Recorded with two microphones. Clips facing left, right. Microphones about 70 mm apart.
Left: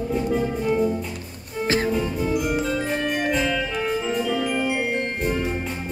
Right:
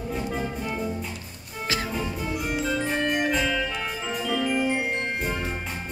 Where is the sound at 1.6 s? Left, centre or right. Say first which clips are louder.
Left 7 dB; left.